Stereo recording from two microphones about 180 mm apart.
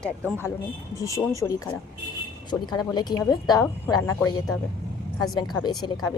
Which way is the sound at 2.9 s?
20° left (ahead or behind).